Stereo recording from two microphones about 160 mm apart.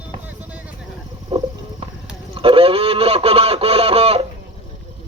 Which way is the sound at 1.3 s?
35° right (ahead or behind).